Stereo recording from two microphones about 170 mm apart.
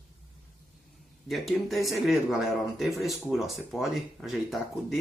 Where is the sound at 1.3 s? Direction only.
Centre (ahead or behind).